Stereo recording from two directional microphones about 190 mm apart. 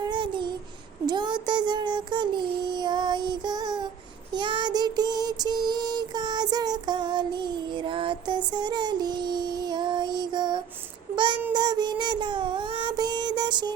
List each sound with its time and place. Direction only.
0.0 s child singing: 25° right (ahead or behind)
4.4 s music: 25° right (ahead or behind)
8.5 s child singing: 20° right (ahead or behind)